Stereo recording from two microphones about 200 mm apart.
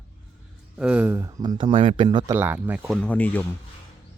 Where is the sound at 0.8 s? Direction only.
5° right (ahead or behind).